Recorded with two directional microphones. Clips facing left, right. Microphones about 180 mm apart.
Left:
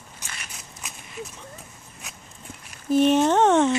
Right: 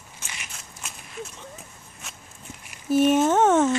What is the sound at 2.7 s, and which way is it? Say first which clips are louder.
Speech: left 1 dB; 10° right (ahead or behind).